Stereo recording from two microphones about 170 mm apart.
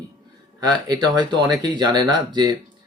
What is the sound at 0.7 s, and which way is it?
Speech, 25° right (ahead or behind).